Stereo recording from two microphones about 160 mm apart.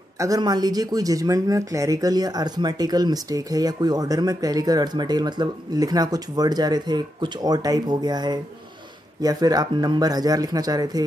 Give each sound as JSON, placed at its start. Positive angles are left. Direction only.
{"t": 0.2, "sound": "speech", "side_deg": -25}